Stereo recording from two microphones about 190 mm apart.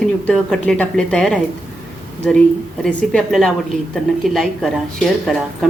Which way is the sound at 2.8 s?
Centre (ahead or behind).